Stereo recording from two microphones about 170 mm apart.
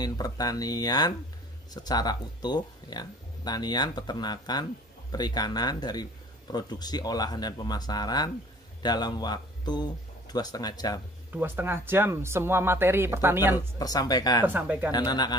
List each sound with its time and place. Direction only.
0.0 s speech: 20° left (ahead or behind)
11.3 s speech: 10° right (ahead or behind)
13.6 s speech: 20° left (ahead or behind)
14.4 s speech: 10° right (ahead or behind)
14.9 s speech: 25° left (ahead or behind)